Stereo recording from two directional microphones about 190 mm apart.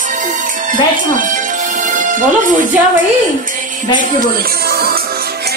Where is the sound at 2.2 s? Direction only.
45° right (ahead or behind).